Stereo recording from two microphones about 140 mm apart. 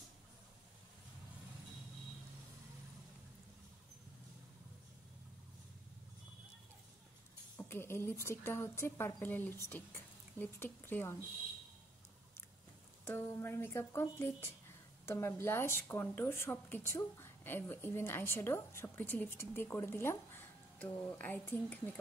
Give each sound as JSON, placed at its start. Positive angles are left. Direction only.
{"t": 7.5, "sound": "speech", "side_deg": 15}
{"t": 13.0, "sound": "speech", "side_deg": 15}